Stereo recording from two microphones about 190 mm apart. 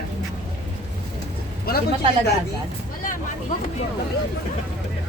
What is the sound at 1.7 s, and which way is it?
Speech, 55° left (ahead or behind).